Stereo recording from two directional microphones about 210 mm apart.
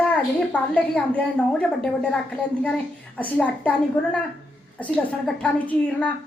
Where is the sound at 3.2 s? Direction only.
5° left (ahead or behind).